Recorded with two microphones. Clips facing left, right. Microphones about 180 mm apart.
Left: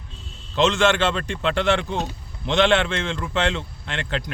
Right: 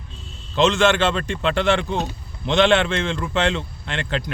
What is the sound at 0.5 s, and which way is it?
A man's voice, 25° right (ahead or behind).